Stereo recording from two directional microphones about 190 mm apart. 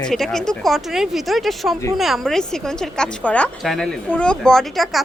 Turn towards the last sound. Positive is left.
turn(degrees=0)  # may be behind; listen again after turning